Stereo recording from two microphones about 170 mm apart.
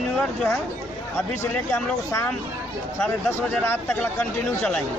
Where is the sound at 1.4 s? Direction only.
15° left (ahead or behind).